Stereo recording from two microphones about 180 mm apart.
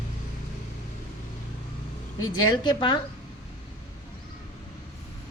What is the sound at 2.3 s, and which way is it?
Speech, 25° left (ahead or behind).